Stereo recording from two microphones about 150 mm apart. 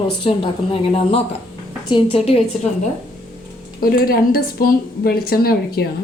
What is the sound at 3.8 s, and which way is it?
A woman's voice, 85° left.